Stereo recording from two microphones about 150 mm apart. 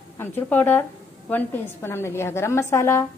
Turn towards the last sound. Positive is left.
turn(degrees=15)  # may be behind; listen again after turning